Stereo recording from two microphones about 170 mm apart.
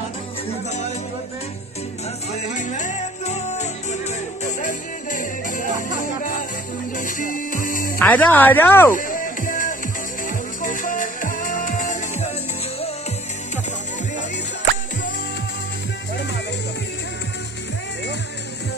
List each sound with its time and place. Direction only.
2.3 s music: 45° left (ahead or behind)
8.0 s speech: 10° left (ahead or behind)
8.9 s music: 55° left (ahead or behind)